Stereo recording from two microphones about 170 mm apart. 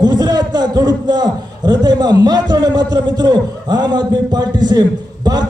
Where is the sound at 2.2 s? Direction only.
25° right (ahead or behind).